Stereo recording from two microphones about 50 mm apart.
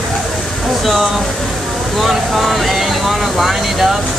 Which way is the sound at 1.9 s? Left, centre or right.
Centre.